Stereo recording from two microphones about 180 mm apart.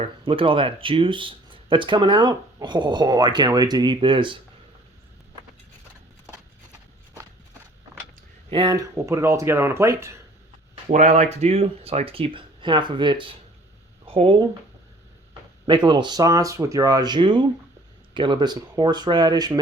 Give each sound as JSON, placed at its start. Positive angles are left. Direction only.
{"t": 0.0, "sound": "speech", "side_deg": -30}
{"t": 8.4, "sound": "speech", "side_deg": -25}
{"t": 10.8, "sound": "speech", "side_deg": -40}
{"t": 14.0, "sound": "a sound", "side_deg": -30}
{"t": 15.6, "sound": "speech", "side_deg": -25}